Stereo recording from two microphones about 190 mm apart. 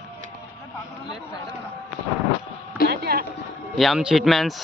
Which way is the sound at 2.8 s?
55° right (ahead or behind).